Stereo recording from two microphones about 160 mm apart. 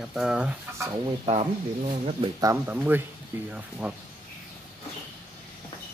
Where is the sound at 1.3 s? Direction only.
40° right (ahead or behind).